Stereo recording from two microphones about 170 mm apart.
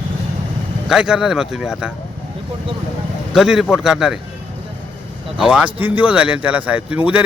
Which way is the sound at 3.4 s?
Centre (ahead or behind).